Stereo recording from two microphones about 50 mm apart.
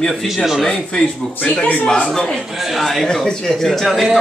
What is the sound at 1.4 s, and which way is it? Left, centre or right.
Speech, left.